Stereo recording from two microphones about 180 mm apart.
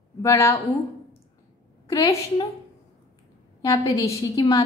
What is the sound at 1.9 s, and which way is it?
Speech, 20° left (ahead or behind).